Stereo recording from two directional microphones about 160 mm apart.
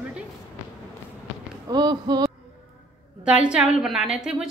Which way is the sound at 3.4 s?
5° right (ahead or behind).